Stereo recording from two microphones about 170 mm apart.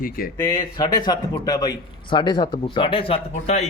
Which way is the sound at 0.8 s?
25° left (ahead or behind).